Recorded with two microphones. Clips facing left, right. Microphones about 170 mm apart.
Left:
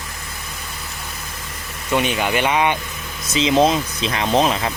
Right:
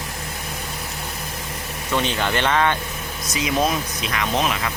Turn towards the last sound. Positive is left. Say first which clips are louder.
# left 5 dB
turn(degrees=30)  # may be behind; listen again after turning